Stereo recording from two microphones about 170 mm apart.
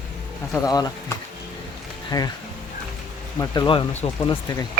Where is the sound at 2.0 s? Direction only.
20° left (ahead or behind).